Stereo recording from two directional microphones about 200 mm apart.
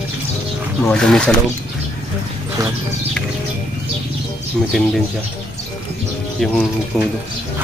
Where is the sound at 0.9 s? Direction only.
5° left (ahead or behind).